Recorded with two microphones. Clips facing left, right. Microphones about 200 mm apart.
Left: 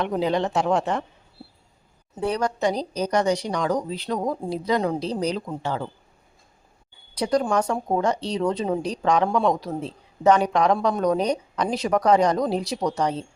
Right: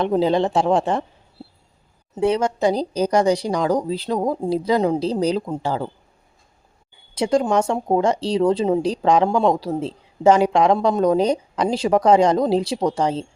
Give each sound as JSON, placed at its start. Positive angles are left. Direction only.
{"t": 0.0, "sound": "a woman's voice", "side_deg": -30}
{"t": 2.1, "sound": "a woman's voice", "side_deg": -25}
{"t": 7.2, "sound": "a woman's voice", "side_deg": -25}